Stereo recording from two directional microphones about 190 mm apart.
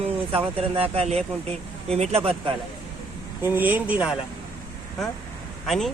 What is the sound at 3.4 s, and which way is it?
Speech, 10° right (ahead or behind).